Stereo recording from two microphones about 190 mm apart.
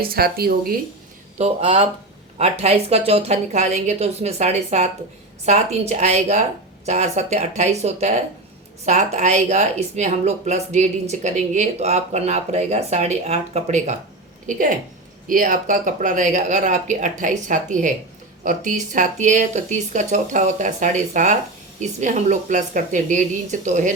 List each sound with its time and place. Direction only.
0.0 s speech: 55° right (ahead or behind)
1.4 s speech: 30° right (ahead or behind)